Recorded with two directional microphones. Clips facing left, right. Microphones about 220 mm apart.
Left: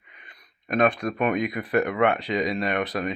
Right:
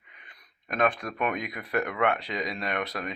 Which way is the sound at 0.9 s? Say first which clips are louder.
Left 5 dB; centre (ahead or behind).